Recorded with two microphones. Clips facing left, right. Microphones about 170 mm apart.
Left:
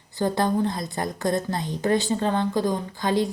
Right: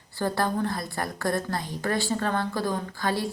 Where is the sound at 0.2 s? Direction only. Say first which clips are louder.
Left 4 dB; 20° left (ahead or behind).